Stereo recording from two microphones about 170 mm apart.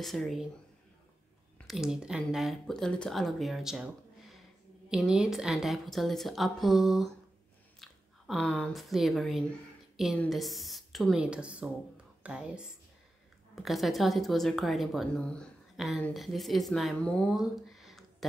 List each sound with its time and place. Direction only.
0.0 s speech: centre (ahead or behind)
1.7 s speech: 5° right (ahead or behind)